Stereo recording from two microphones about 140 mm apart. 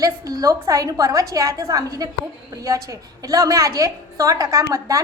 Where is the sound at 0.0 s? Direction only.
25° right (ahead or behind).